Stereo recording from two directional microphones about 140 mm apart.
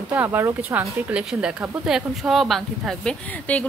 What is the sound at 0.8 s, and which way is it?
A child's voice, 5° right (ahead or behind).